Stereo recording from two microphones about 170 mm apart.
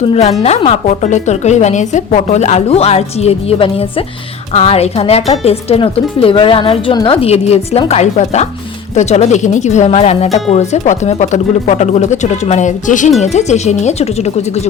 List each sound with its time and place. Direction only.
0.0 s speech: 40° left (ahead or behind)